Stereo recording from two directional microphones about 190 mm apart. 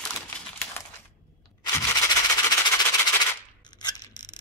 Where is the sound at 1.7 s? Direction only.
15° left (ahead or behind).